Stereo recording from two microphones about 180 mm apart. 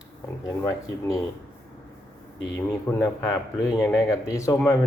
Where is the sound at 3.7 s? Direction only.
Centre (ahead or behind).